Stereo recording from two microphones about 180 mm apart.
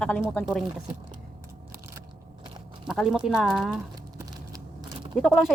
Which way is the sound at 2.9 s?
Centre (ahead or behind).